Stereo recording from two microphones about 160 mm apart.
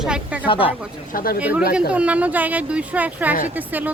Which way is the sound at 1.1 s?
65° left (ahead or behind).